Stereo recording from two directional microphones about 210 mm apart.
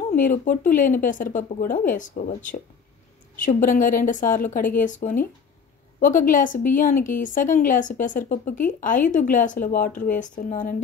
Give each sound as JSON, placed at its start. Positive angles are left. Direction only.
{"t": 0.1, "sound": "a woman's voice", "side_deg": 40}